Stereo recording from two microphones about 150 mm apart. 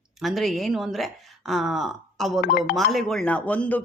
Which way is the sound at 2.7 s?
Centre (ahead or behind).